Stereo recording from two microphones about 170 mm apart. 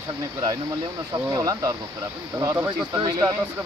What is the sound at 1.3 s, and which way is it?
Speech, 20° right (ahead or behind).